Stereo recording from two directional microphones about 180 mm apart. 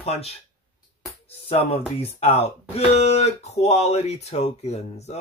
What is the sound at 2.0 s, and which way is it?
Speech, 35° left (ahead or behind).